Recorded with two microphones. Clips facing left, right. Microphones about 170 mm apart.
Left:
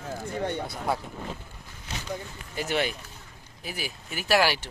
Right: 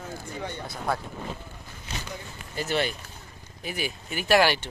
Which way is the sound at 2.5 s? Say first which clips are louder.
Right 1 dB; 15° left (ahead or behind).